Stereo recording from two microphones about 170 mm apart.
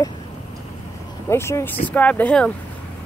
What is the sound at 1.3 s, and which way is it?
Speech, 15° left (ahead or behind).